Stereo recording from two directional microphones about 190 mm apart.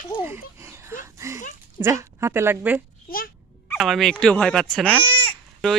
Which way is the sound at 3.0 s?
50° left (ahead or behind).